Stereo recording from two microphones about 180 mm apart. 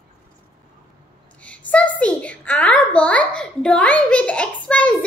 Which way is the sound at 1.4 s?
5° left (ahead or behind).